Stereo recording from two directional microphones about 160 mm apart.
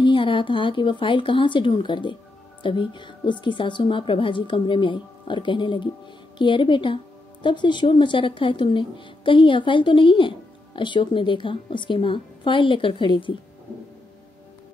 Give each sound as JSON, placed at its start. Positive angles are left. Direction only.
{"t": 0.0, "sound": "a woman's voice", "side_deg": 30}